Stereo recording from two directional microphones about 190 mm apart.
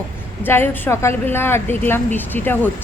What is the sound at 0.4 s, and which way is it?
A woman's voice, 10° left (ahead or behind).